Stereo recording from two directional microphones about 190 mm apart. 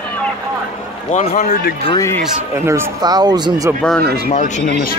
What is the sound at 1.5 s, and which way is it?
Speech, 55° left (ahead or behind).